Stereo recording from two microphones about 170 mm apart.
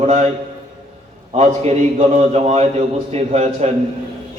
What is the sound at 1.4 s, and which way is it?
A man's voice, 40° right (ahead or behind).